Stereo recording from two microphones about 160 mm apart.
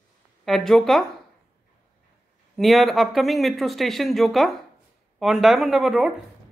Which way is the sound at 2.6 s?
Centre (ahead or behind).